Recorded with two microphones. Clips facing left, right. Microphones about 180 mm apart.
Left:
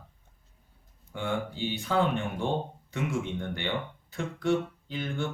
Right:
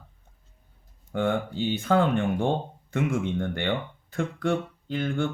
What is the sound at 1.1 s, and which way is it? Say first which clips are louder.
Speech: right 6 dB; 55° right (ahead or behind).